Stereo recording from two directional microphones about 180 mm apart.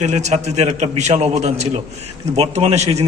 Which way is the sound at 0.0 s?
40° right (ahead or behind).